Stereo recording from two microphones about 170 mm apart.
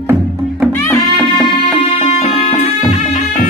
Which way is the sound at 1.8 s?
35° left (ahead or behind).